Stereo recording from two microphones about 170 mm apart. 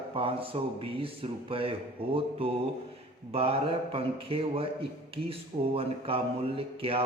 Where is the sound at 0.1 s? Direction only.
35° right (ahead or behind).